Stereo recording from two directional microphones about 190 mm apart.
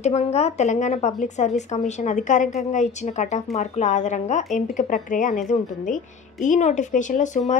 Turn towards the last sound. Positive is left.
turn(degrees=40)  # may be behind; listen again after turning